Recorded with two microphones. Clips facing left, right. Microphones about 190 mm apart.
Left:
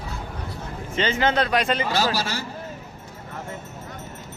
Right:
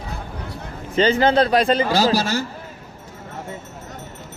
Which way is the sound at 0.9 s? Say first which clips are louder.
Right 6 dB; 35° right (ahead or behind).